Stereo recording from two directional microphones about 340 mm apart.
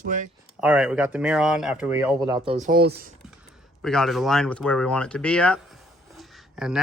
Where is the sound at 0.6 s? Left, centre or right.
Centre; by 3.1 s right.